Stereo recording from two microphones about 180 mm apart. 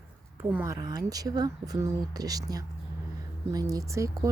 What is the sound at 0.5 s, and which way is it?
Speech, 15° right (ahead or behind).